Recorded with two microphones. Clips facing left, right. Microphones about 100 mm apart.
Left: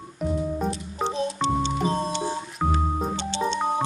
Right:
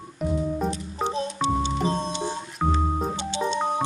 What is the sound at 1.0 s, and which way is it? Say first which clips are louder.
Organ: left 1 dB; 5° right (ahead or behind).